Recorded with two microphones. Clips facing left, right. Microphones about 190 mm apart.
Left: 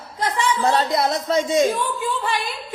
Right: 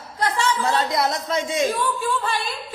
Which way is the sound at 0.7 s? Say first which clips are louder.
Left 2 dB; 30° left (ahead or behind).